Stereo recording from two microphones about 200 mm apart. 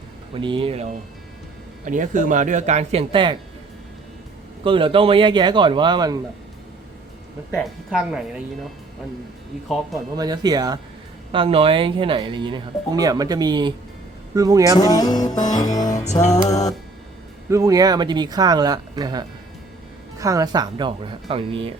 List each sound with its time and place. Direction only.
0.3 s speech: 25° right (ahead or behind)
4.6 s speech: 25° right (ahead or behind)
7.5 s speech: centre (ahead or behind)
10.2 s speech: 20° right (ahead or behind)
14.8 s music: 20° left (ahead or behind)
15.9 s music: 35° left (ahead or behind)
16.5 s music: 20° left (ahead or behind)
17.5 s speech: 15° right (ahead or behind)